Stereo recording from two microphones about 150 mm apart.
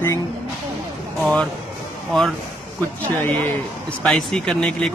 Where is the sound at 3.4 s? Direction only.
5° left (ahead or behind).